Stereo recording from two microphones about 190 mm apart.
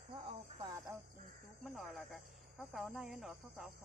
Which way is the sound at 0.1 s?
30° right (ahead or behind).